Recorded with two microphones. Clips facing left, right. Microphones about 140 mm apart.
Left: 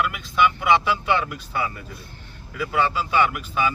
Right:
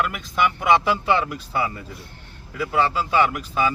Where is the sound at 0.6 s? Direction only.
35° right (ahead or behind).